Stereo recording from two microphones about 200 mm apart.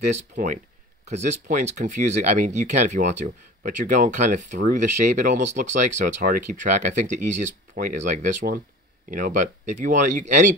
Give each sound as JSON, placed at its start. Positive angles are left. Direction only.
{"t": 0.1, "sound": "speech", "side_deg": -40}